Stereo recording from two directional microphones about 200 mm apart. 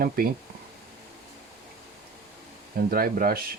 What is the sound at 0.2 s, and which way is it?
Speech, 50° right (ahead or behind).